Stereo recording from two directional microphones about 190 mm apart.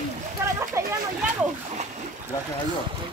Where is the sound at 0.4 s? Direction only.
15° right (ahead or behind).